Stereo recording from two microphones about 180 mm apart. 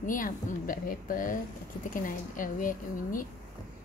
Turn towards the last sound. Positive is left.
turn(degrees=50)  # may be behind; listen again after turning